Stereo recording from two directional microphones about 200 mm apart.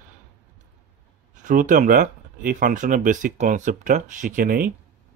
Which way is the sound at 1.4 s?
40° right (ahead or behind).